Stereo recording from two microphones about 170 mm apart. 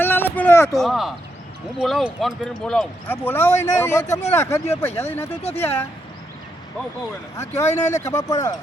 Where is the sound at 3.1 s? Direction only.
10° left (ahead or behind).